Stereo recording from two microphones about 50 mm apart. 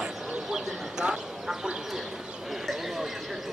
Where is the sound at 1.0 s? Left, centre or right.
Centre.